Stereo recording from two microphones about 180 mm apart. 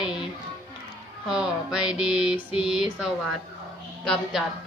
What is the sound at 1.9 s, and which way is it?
Speech, 5° right (ahead or behind).